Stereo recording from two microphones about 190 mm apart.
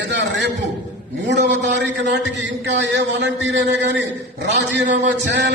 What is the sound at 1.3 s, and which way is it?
A man's voice, 65° right (ahead or behind).